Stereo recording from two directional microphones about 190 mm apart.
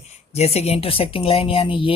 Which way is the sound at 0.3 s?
35° left (ahead or behind).